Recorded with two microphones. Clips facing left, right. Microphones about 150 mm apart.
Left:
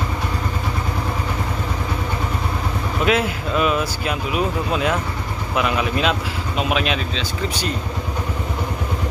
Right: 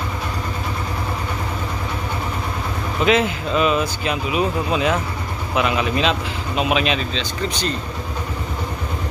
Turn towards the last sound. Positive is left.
turn(degrees=10)  # may be behind; listen again after turning